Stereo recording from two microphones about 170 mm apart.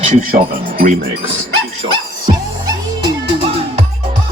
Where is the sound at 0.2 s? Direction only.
55° right (ahead or behind).